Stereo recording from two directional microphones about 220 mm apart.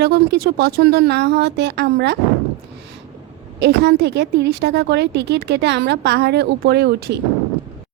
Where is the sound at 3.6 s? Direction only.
50° right (ahead or behind).